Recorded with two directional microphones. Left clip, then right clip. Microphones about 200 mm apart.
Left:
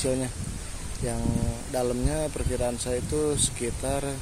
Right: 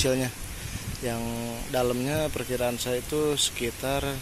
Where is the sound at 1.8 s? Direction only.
Centre (ahead or behind).